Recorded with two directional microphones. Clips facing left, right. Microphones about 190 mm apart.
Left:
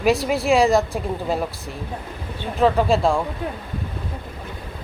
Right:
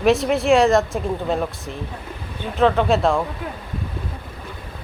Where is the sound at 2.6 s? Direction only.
Centre (ahead or behind).